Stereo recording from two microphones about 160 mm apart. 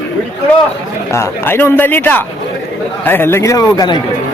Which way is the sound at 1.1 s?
15° left (ahead or behind).